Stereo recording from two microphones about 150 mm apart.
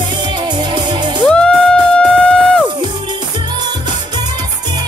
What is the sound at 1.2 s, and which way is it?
Music, 5° left (ahead or behind).